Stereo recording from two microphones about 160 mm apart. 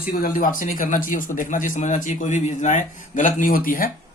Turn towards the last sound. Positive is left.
turn(degrees=60)  # may be behind; listen again after turning